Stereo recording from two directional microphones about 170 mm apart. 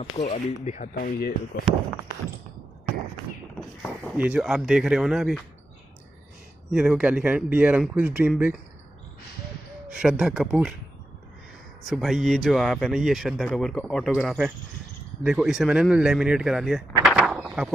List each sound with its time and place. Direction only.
0.2 s speech: 40° left (ahead or behind)
0.9 s speech: 60° left (ahead or behind)
4.2 s speech: 5° right (ahead or behind)
6.7 s speech: 5° right (ahead or behind)
9.8 s speech: 5° right (ahead or behind)
11.9 s speech: centre (ahead or behind)